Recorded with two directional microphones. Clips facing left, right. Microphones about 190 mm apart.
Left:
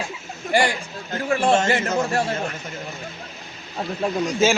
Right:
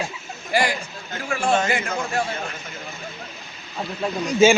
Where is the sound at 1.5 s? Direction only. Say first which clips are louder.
Left 3 dB; 40° left (ahead or behind).